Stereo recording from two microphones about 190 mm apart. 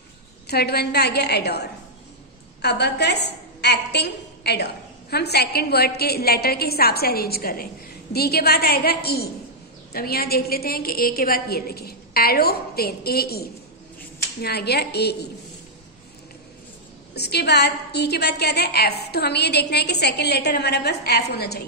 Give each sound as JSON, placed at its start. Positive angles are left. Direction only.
{"t": 0.5, "sound": "a woman's voice", "side_deg": 55}
{"t": 17.1, "sound": "a woman's voice", "side_deg": 60}